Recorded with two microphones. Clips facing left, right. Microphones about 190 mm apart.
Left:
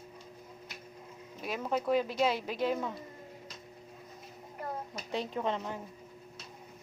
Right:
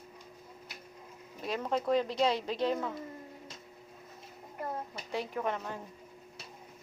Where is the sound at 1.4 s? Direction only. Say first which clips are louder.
Even; 5° left (ahead or behind).